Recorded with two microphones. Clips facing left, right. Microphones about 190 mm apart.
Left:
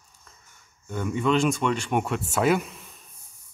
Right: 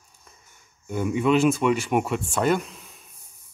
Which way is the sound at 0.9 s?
10° right (ahead or behind).